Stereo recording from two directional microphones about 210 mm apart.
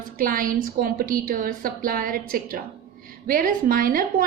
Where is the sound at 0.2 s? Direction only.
40° right (ahead or behind).